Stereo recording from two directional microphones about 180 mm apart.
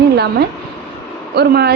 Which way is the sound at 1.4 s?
65° right (ahead or behind).